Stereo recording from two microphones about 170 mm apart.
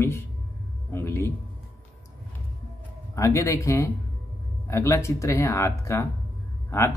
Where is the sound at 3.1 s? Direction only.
20° left (ahead or behind).